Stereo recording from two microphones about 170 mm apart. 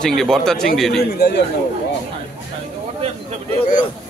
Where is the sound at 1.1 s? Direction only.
70° left (ahead or behind).